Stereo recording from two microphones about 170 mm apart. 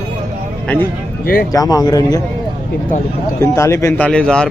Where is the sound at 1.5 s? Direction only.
20° left (ahead or behind).